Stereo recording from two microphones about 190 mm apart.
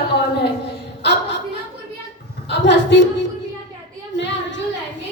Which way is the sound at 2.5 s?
70° left (ahead or behind).